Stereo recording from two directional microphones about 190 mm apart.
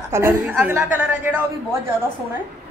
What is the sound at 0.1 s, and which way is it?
A woman's voice, 10° right (ahead or behind).